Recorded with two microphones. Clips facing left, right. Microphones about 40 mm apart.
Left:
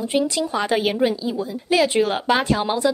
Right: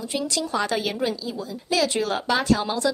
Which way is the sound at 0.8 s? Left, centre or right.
Left.